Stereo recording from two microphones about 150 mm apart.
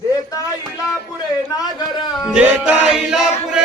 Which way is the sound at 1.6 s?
25° left (ahead or behind).